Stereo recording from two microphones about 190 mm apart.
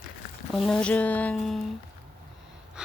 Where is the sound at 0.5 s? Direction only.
Centre (ahead or behind).